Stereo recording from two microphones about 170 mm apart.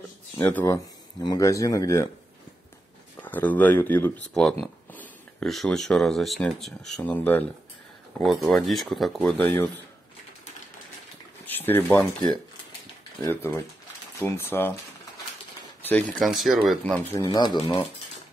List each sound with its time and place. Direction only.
0.4 s speech: 10° left (ahead or behind)
3.2 s speech: 10° left (ahead or behind)
9.4 s speech: 15° left (ahead or behind)
11.4 s speech: 10° left (ahead or behind)
13.2 s speech: 15° left (ahead or behind)
15.9 s speech: 5° left (ahead or behind); by 17.6 s 25° left (ahead or behind)